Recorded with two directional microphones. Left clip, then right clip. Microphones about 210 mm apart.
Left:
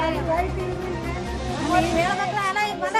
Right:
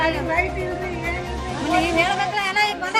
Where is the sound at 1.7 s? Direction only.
20° right (ahead or behind).